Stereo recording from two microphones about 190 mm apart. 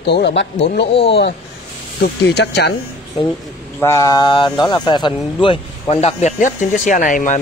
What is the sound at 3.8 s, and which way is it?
Speech, 15° left (ahead or behind).